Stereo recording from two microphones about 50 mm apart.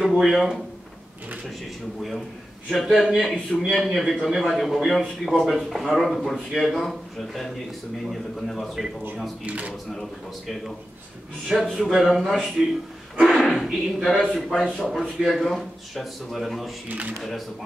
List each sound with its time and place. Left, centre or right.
0.0 s a sound: centre
2.7 s speech: centre
9.4 s speech: right
11.4 s speech: centre
13.3 s a sound: centre
14.0 s speech: centre